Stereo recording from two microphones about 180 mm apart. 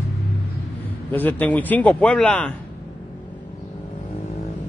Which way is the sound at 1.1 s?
10° left (ahead or behind).